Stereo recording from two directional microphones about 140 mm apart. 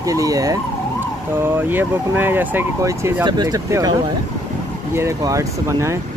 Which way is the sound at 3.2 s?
30° right (ahead or behind).